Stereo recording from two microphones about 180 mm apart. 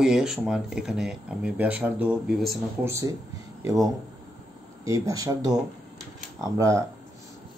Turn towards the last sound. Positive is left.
turn(degrees=-20)  # may be behind; listen again after turning